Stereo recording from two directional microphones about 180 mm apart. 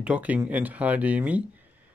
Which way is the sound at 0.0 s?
5° right (ahead or behind).